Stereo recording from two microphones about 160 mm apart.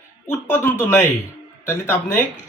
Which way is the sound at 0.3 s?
15° left (ahead or behind).